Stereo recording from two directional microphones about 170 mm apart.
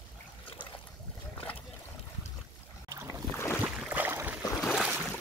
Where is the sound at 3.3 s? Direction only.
10° left (ahead or behind).